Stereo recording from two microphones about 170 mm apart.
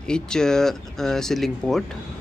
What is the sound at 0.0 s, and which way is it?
Speech, 5° left (ahead or behind).